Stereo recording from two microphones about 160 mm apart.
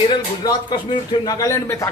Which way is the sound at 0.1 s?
25° left (ahead or behind).